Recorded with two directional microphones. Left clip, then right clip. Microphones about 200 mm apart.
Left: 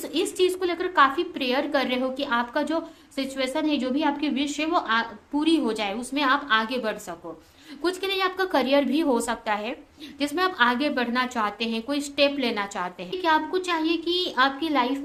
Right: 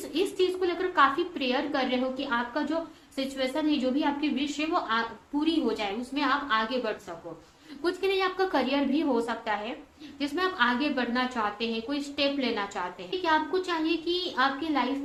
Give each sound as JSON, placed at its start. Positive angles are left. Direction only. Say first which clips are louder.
{"t": 0.1, "sound": "a woman's voice", "louder": "left 3 dB", "side_deg": 35}